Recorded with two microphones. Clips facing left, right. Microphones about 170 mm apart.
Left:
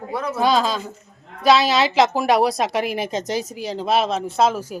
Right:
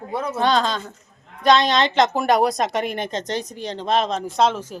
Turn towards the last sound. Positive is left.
turn(degrees=10)  # may be behind; listen again after turning